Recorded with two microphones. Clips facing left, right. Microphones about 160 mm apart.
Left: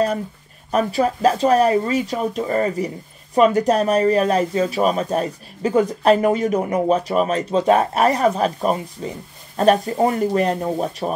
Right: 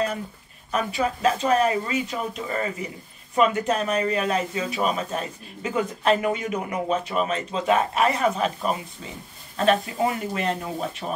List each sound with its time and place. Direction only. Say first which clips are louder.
0.7 s speech: left 6 dB; 40° left (ahead or behind)